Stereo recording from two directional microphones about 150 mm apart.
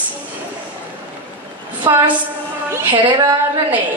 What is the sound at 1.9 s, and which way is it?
Speech, 20° right (ahead or behind).